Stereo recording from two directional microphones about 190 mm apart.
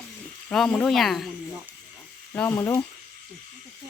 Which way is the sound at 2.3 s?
10° left (ahead or behind).